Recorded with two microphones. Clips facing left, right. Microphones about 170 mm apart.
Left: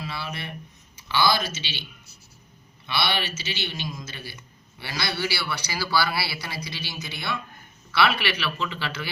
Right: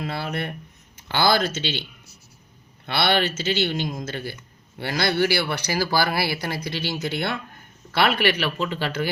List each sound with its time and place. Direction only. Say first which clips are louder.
0.0 s speech: right 6 dB; 55° right (ahead or behind)
2.8 s speech: right 6 dB; 55° right (ahead or behind)